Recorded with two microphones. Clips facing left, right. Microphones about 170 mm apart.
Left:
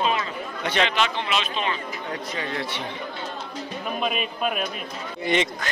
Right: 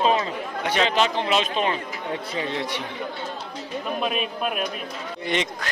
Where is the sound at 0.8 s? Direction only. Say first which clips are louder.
Right 3 dB; 35° right (ahead or behind).